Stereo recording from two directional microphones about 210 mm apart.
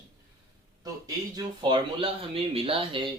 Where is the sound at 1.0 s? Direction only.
20° right (ahead or behind).